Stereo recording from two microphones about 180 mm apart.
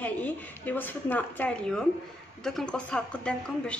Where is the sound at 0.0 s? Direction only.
10° left (ahead or behind).